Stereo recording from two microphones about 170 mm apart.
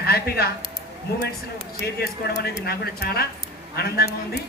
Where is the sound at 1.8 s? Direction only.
70° left (ahead or behind).